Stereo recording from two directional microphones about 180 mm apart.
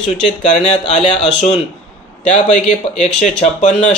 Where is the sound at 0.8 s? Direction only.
35° left (ahead or behind).